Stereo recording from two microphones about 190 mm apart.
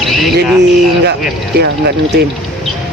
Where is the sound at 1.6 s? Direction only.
60° right (ahead or behind).